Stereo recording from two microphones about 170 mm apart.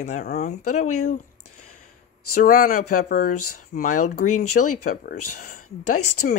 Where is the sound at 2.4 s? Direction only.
55° left (ahead or behind).